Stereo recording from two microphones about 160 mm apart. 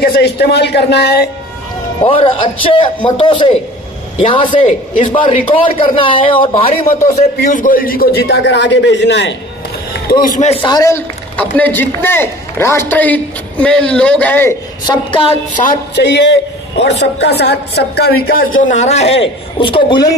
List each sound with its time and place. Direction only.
0.0 s a man's voice: 85° left
2.0 s a man's voice: 35° left (ahead or behind)
7.4 s a man's voice: 55° left (ahead or behind); by 9.3 s 90° left
10.0 s a man's voice: 60° left (ahead or behind)
10.5 s a man's voice: 30° left (ahead or behind)
10.8 s a woman's voice: 15° left (ahead or behind)
14.9 s a man's voice: 30° left (ahead or behind)
15.9 s a man's voice: 90° left
18.7 s a man's voice: 45° left (ahead or behind)